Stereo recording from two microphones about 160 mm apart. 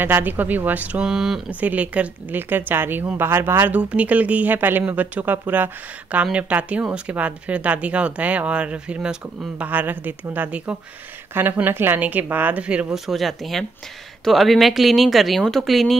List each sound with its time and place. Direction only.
0.0 s speech: 10° right (ahead or behind)